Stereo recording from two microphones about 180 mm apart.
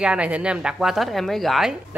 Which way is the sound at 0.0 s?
5° right (ahead or behind).